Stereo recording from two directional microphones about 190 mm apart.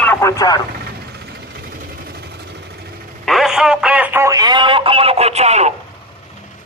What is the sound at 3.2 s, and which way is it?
Speech, centre (ahead or behind).